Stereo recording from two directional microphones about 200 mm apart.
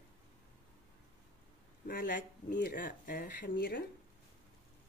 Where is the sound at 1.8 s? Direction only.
50° left (ahead or behind).